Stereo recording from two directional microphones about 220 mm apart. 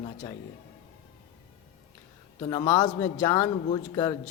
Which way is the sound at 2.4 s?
20° left (ahead or behind).